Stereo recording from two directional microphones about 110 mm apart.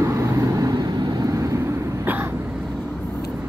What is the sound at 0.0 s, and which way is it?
Vehicle, 25° right (ahead or behind).